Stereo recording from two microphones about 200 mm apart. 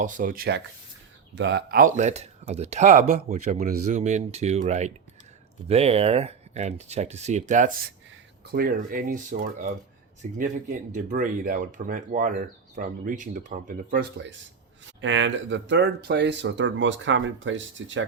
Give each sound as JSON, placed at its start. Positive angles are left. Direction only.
{"t": 0.0, "sound": "speech", "side_deg": -40}
{"t": 14.8, "sound": "speech", "side_deg": -65}